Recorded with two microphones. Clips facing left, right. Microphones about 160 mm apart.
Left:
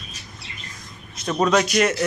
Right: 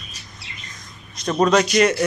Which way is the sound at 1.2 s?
Centre (ahead or behind).